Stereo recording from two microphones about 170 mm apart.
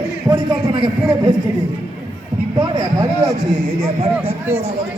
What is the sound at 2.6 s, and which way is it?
Speech, 25° right (ahead or behind).